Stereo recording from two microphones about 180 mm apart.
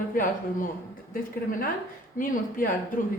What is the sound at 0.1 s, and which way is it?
Speech, 50° left (ahead or behind).